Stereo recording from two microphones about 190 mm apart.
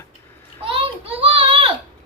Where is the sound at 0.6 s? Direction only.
30° right (ahead or behind).